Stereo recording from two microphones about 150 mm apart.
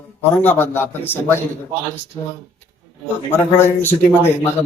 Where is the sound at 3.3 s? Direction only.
15° left (ahead or behind).